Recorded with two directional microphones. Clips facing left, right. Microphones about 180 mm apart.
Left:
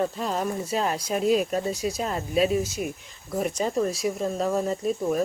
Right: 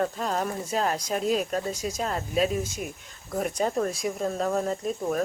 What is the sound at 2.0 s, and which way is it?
Speech, 40° right (ahead or behind).